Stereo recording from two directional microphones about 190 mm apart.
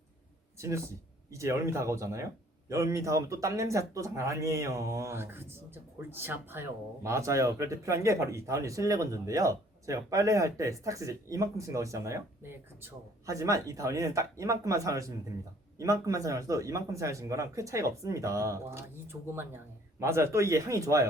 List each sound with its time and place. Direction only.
0.6 s speech: 15° right (ahead or behind)